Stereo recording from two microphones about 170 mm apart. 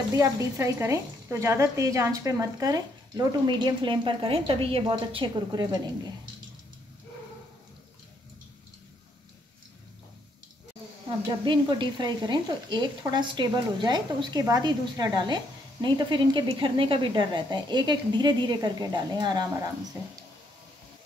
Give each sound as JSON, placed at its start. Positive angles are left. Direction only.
{"t": 0.1, "sound": "stir", "side_deg": -20}
{"t": 11.4, "sound": "stir", "side_deg": -25}